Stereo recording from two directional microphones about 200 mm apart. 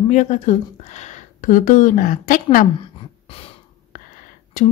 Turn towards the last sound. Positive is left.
turn(degrees=40)  # may be behind; listen again after turning